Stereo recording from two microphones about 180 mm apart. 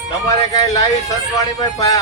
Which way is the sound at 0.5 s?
20° left (ahead or behind).